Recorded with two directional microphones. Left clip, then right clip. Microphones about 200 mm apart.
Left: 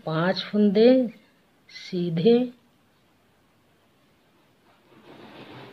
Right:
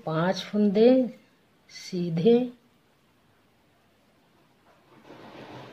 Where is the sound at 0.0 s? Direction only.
10° left (ahead or behind).